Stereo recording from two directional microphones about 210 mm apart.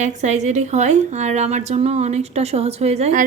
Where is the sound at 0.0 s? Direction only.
35° right (ahead or behind).